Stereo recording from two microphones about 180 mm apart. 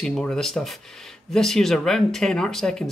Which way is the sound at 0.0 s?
5° left (ahead or behind).